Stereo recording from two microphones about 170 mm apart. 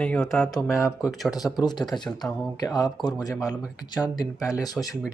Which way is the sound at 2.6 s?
20° left (ahead or behind).